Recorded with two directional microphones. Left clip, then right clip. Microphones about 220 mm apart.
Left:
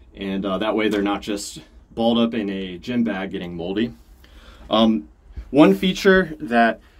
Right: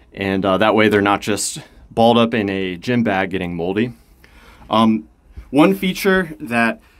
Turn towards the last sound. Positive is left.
turn(degrees=-20)  # may be behind; listen again after turning